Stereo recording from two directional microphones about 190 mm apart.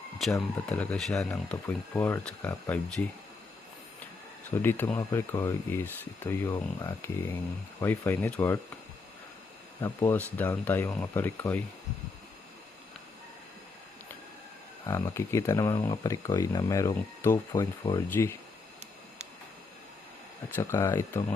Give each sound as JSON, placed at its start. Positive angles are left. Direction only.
{"t": 0.7, "sound": "speech", "side_deg": 5}
{"t": 4.5, "sound": "speech", "side_deg": 10}
{"t": 9.8, "sound": "speech", "side_deg": 10}
{"t": 14.8, "sound": "speech", "side_deg": 15}
{"t": 20.6, "sound": "speech", "side_deg": 15}